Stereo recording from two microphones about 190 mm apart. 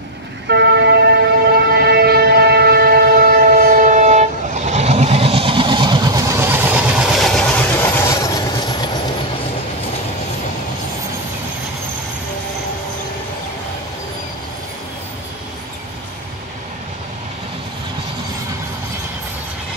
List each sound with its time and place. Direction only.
0.5 s vehicle: 65° right (ahead or behind)
1.8 s train: 55° right (ahead or behind); by 8.9 s 20° left (ahead or behind)